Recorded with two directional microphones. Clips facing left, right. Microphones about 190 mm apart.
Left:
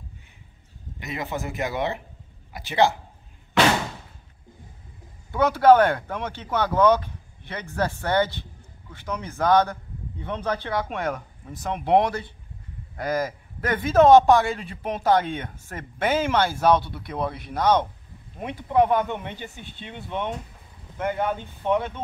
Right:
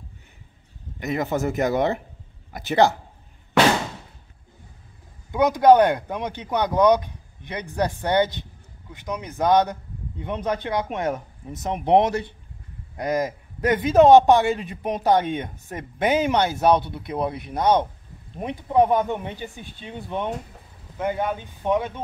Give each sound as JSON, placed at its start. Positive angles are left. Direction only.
{"t": 0.9, "sound": "speech", "side_deg": -45}
{"t": 5.3, "sound": "a man's voice", "side_deg": -15}